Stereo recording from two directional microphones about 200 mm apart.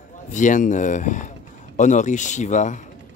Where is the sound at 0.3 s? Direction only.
40° left (ahead or behind).